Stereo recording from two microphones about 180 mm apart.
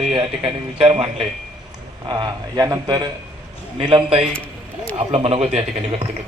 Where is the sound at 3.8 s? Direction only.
30° right (ahead or behind).